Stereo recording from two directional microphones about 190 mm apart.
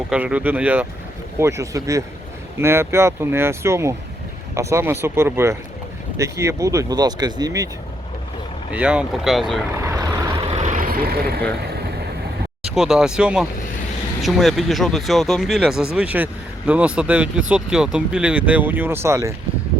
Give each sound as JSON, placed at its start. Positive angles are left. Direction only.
{"t": 0.1, "sound": "speech", "side_deg": -5}
{"t": 8.7, "sound": "speech", "side_deg": -5}
{"t": 10.6, "sound": "vehicle", "side_deg": -45}
{"t": 12.7, "sound": "speech", "side_deg": -5}